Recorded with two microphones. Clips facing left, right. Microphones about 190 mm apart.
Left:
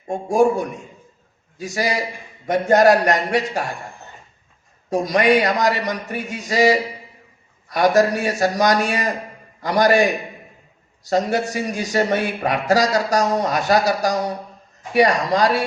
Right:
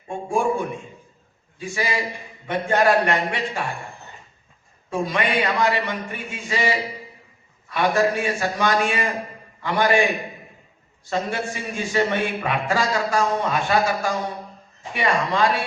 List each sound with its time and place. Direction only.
0.1 s a man's voice: 40° left (ahead or behind)
4.9 s a man's voice: 40° left (ahead or behind)
11.1 s a man's voice: 40° left (ahead or behind)